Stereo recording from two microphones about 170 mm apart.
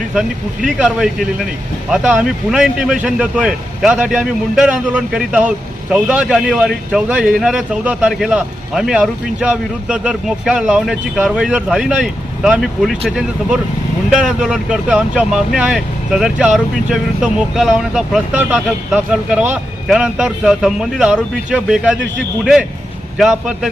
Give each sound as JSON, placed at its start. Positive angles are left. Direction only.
{"t": 0.1, "sound": "speech", "side_deg": -5}
{"t": 23.1, "sound": "speech", "side_deg": -5}